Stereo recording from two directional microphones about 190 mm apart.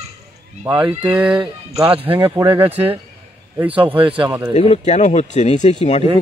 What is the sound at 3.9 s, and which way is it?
Speech, 30° right (ahead or behind).